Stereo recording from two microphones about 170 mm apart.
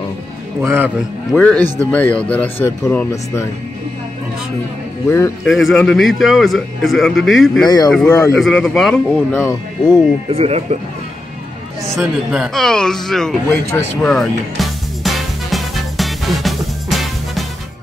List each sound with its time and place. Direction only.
0.6 s a man's voice: 10° right (ahead or behind)
1.3 s speech: 5° left (ahead or behind)
5.4 s a man's voice: centre (ahead or behind)
7.6 s speech: 25° left (ahead or behind)
7.9 s a man's voice: 10° left (ahead or behind)
9.3 s speech: 15° left (ahead or behind)
10.3 s speech: 35° right (ahead or behind)
11.9 s a man's voice: centre (ahead or behind)
13.5 s speech: 15° left (ahead or behind)
14.0 s music: centre (ahead or behind)